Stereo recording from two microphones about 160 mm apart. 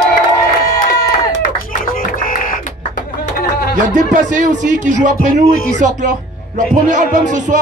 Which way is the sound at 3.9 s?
50° right (ahead or behind).